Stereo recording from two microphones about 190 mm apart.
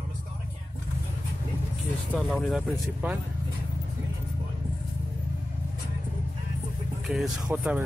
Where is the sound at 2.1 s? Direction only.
Centre (ahead or behind).